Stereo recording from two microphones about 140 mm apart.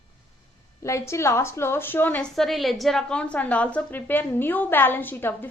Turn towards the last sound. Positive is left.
turn(degrees=15)  # may be behind; listen again after turning